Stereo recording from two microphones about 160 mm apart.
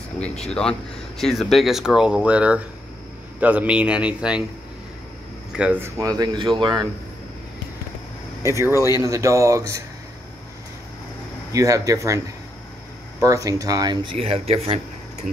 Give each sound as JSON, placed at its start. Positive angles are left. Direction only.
{"t": 0.5, "sound": "speech", "side_deg": 5}
{"t": 5.6, "sound": "speech", "side_deg": -10}
{"t": 5.9, "sound": "speech", "side_deg": -25}
{"t": 8.7, "sound": "speech", "side_deg": 20}
{"t": 9.0, "sound": "speech", "side_deg": -20}
{"t": 11.5, "sound": "speech", "side_deg": -20}
{"t": 13.2, "sound": "speech", "side_deg": -20}
{"t": 14.1, "sound": "speech", "side_deg": -40}